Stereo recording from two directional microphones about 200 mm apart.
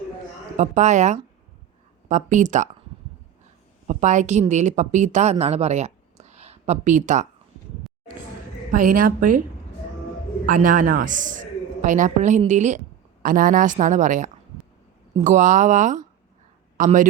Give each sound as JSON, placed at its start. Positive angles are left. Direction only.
{"t": 0.5, "sound": "a man's voice", "side_deg": -35}
{"t": 3.8, "sound": "a woman's voice", "side_deg": -40}
{"t": 8.7, "sound": "a woman's voice", "side_deg": -40}
{"t": 10.4, "sound": "a man's voice", "side_deg": -45}